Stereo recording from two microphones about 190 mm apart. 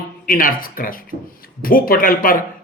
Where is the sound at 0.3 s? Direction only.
50° left (ahead or behind).